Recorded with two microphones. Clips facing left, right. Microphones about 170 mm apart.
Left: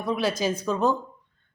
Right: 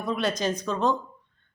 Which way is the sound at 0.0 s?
Centre (ahead or behind).